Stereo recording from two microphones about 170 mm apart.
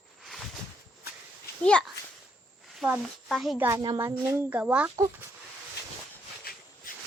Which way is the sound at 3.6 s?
25° right (ahead or behind).